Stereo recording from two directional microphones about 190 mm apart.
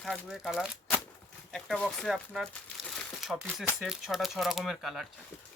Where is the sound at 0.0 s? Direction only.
Centre (ahead or behind).